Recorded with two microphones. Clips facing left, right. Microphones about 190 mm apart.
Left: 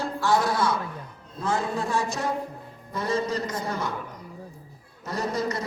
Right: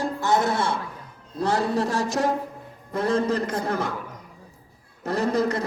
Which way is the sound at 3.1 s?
55° right (ahead or behind).